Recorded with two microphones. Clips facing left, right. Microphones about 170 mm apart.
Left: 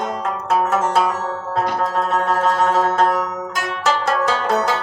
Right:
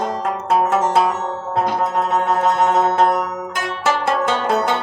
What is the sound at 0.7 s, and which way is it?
Music, 20° right (ahead or behind).